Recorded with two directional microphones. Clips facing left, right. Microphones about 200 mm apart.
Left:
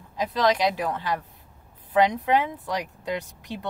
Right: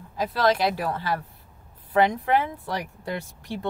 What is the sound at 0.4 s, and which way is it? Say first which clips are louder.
Speech: even; 20° left (ahead or behind).